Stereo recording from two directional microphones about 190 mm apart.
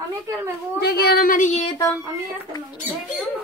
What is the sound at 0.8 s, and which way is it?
Speech, 55° left (ahead or behind).